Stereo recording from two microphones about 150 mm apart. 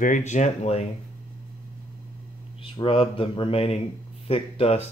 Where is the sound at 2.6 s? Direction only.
40° left (ahead or behind).